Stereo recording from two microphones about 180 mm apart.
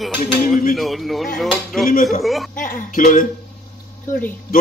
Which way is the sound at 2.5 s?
45° left (ahead or behind).